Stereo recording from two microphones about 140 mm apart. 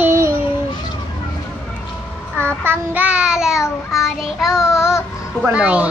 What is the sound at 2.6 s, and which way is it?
Child singing, 15° right (ahead or behind).